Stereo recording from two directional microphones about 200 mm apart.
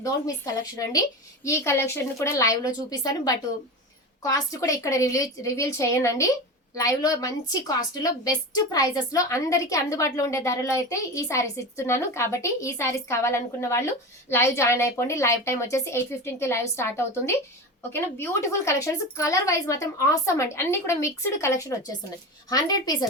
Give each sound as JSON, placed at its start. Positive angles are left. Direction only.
{"t": 0.0, "sound": "a woman's voice", "side_deg": 15}